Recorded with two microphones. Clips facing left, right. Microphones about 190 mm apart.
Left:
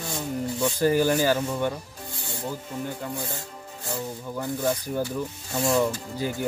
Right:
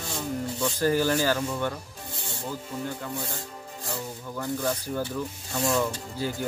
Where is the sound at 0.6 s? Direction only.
15° left (ahead or behind).